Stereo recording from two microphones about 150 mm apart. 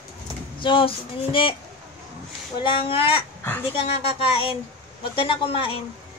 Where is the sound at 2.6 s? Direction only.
35° left (ahead or behind).